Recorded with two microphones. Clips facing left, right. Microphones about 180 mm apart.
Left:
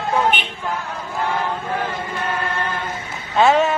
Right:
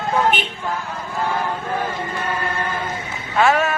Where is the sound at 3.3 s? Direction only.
20° left (ahead or behind).